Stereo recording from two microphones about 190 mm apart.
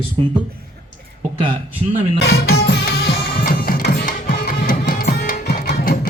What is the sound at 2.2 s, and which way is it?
Music, 55° left (ahead or behind).